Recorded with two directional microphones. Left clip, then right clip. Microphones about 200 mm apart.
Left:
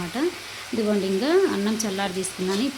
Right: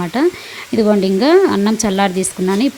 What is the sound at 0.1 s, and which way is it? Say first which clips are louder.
Speech: right 11 dB; 35° right (ahead or behind).